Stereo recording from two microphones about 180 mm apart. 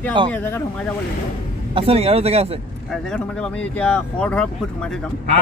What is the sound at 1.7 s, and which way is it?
Speech, 30° right (ahead or behind).